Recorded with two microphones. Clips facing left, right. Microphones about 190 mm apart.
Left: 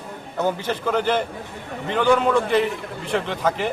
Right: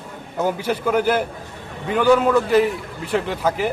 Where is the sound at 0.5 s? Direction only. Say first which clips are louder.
Right 3 dB; 10° right (ahead or behind).